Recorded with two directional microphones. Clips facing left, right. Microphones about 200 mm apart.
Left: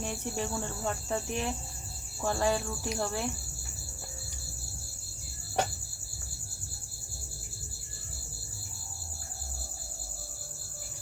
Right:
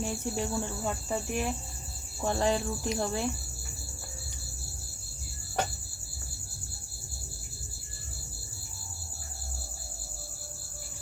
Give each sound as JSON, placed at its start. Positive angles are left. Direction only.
{"t": 0.0, "sound": "speech", "side_deg": -10}
{"t": 2.2, "sound": "speech", "side_deg": -20}